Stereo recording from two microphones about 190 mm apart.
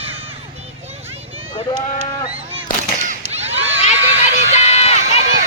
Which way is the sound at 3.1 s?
35° right (ahead or behind).